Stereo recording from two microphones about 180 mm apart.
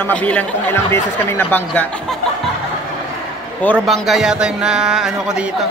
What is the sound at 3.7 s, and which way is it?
Speech, centre (ahead or behind).